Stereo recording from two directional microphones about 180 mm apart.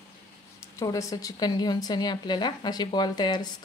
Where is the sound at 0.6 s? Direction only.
15° left (ahead or behind).